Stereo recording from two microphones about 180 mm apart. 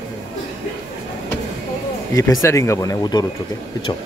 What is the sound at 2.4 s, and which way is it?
Speech, 15° left (ahead or behind).